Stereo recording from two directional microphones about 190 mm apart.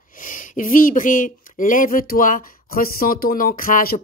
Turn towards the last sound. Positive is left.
turn(degrees=50)  # may be behind; listen again after turning